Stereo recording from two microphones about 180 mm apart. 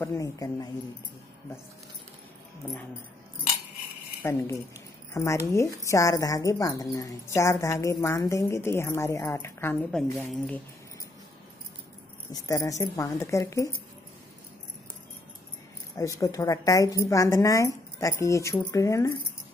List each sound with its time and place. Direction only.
0.0 s speech: 15° left (ahead or behind)
4.2 s speech: 15° left (ahead or behind)
12.3 s speech: 20° left (ahead or behind)
16.0 s speech: 20° left (ahead or behind)